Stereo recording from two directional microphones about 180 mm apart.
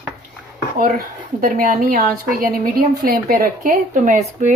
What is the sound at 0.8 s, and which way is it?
Speech, 55° right (ahead or behind).